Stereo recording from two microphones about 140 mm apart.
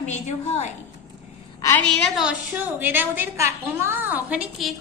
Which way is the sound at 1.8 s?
5° left (ahead or behind).